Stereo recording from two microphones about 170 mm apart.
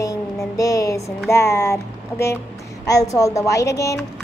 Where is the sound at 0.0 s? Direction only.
20° left (ahead or behind).